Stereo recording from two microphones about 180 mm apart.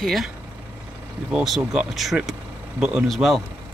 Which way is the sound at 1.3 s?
Centre (ahead or behind).